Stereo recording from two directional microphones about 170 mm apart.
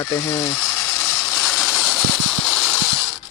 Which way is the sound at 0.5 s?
Centre (ahead or behind).